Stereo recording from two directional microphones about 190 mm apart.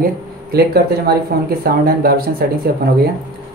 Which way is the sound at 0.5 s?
55° right (ahead or behind).